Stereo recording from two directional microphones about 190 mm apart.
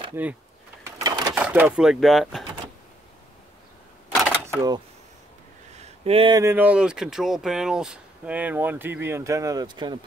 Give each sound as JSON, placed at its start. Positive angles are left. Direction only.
{"t": 0.1, "sound": "speech", "side_deg": -10}
{"t": 0.8, "sound": "a sound", "side_deg": -20}
{"t": 1.3, "sound": "speech", "side_deg": -10}
{"t": 4.6, "sound": "speech", "side_deg": -20}
{"t": 5.8, "sound": "a sound", "side_deg": -35}
{"t": 6.4, "sound": "speech", "side_deg": -10}